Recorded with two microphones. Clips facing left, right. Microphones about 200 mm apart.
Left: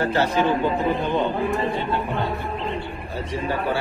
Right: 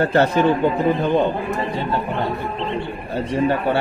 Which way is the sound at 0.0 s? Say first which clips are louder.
Right 5 dB; 55° right (ahead or behind).